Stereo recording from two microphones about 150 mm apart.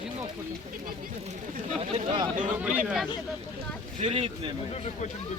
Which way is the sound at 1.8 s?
40° right (ahead or behind).